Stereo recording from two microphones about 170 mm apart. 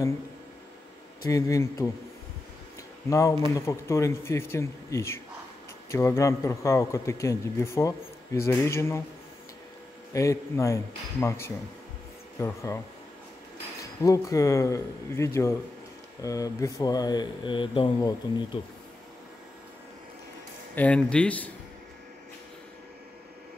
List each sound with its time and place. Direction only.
1.3 s speech: 20° left (ahead or behind)
3.1 s a man's voice: 15° left (ahead or behind)
10.1 s a man's voice: 15° left (ahead or behind)
14.0 s a man's voice: 20° left (ahead or behind)
20.7 s a man's voice: 5° left (ahead or behind)